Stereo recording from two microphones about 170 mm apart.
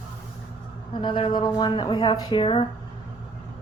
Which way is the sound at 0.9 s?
30° left (ahead or behind).